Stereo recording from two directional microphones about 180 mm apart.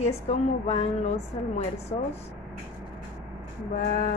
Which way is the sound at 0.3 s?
40° left (ahead or behind).